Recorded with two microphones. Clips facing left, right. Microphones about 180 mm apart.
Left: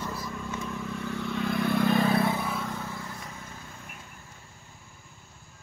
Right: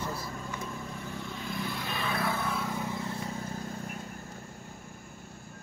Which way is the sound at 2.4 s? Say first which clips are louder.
Left 1 dB; centre (ahead or behind).